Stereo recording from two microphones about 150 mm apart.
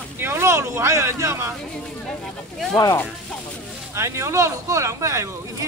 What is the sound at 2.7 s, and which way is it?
Speech, 25° left (ahead or behind).